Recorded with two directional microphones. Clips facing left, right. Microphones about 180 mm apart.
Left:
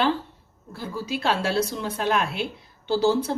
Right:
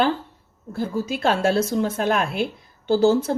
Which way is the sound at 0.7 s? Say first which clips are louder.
Right 5 dB; 50° right (ahead or behind).